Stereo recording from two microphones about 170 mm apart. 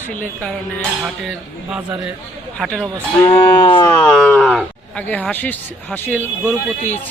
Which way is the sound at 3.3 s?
25° left (ahead or behind).